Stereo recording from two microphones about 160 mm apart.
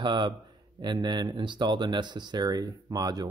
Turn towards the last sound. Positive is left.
turn(degrees=-25)  # may be behind; listen again after turning